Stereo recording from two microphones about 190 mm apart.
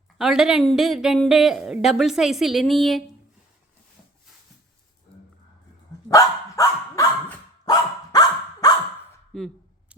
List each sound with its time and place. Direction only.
0.2 s speech: 5° right (ahead or behind)
6.1 s dog: 15° left (ahead or behind)
9.3 s speech: 5° left (ahead or behind)
9.9 s heart sounds: 5° right (ahead or behind)